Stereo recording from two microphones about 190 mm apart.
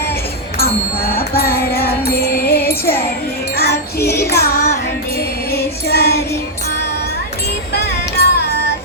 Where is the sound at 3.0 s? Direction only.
55° left (ahead or behind).